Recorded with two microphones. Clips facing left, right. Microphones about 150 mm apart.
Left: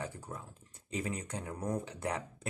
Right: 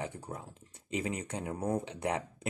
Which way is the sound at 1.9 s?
20° right (ahead or behind).